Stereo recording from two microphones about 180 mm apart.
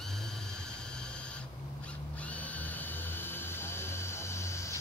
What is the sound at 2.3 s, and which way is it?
Music, 10° left (ahead or behind).